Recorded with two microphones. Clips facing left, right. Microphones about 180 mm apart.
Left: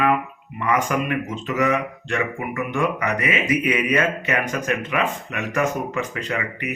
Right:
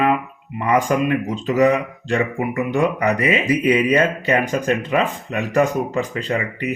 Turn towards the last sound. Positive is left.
turn(degrees=-30)  # may be behind; listen again after turning